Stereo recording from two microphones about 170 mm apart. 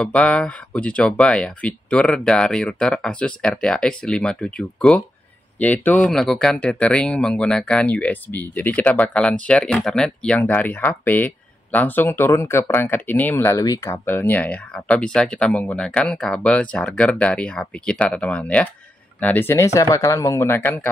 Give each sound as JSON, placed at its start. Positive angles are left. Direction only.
{"t": 0.0, "sound": "speech", "side_deg": 5}